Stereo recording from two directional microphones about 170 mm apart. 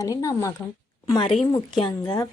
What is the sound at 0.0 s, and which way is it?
Speech, 20° left (ahead or behind).